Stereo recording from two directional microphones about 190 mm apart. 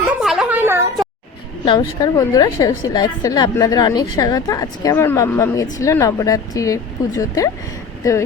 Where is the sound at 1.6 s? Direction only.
25° left (ahead or behind).